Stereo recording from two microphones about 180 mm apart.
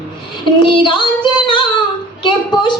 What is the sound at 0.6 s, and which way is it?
Child singing, 25° left (ahead or behind).